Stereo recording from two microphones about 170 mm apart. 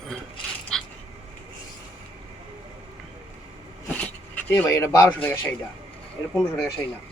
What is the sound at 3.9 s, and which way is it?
Speech, 10° left (ahead or behind).